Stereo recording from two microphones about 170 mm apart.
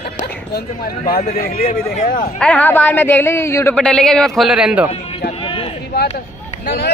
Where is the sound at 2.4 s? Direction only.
10° left (ahead or behind).